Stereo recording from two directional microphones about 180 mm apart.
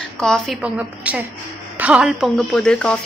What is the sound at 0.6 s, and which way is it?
A woman's voice, 5° right (ahead or behind).